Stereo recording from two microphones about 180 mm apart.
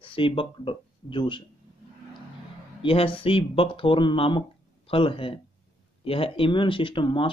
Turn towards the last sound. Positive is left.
turn(degrees=30)  # may be behind; listen again after turning